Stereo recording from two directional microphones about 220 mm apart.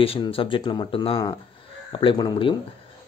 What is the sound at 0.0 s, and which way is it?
Speech, 25° left (ahead or behind).